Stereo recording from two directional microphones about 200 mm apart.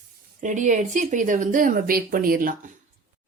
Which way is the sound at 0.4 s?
40° right (ahead or behind).